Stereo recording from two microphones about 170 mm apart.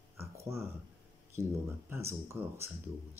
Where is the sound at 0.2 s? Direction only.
15° right (ahead or behind).